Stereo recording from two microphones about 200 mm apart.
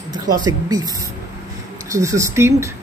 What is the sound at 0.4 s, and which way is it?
Speech, 20° right (ahead or behind).